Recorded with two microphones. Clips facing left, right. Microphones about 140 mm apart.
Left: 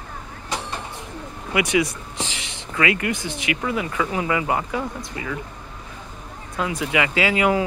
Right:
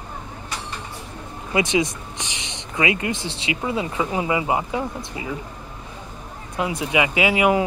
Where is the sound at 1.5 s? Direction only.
25° right (ahead or behind).